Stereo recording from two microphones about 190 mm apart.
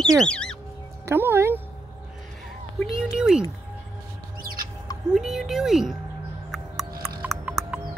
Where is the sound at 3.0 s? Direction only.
5° right (ahead or behind).